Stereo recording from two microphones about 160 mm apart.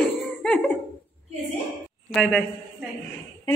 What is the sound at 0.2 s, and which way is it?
Cough, centre (ahead or behind).